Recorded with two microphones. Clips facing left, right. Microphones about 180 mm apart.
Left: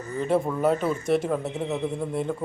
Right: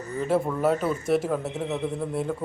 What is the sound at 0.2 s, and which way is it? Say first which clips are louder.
A man's voice: left 1 dB; centre (ahead or behind).